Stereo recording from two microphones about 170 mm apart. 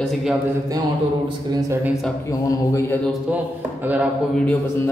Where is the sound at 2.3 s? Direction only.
20° left (ahead or behind).